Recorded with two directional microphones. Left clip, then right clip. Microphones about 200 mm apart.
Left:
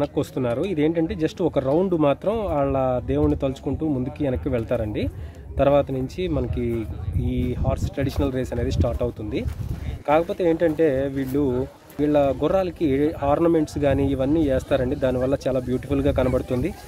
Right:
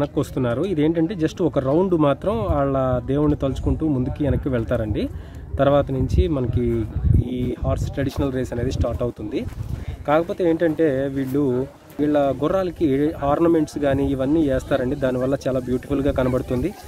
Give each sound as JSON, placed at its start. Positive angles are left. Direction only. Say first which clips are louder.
{"t": 0.0, "sound": "speech", "louder": "right 1 dB", "side_deg": 5}